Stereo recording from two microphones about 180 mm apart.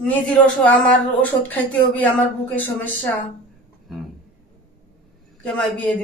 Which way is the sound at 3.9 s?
Centre (ahead or behind).